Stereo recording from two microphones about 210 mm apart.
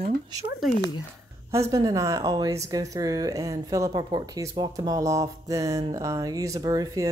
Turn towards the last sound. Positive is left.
turn(degrees=-15)  # may be behind; listen again after turning